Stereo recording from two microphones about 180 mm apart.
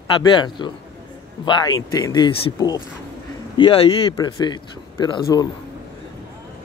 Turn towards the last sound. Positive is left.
turn(degrees=25)  # may be behind; listen again after turning